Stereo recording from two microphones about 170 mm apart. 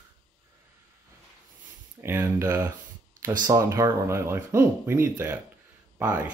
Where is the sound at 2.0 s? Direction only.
15° right (ahead or behind).